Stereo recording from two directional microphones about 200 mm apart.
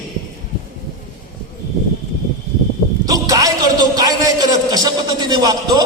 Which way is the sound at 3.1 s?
15° right (ahead or behind).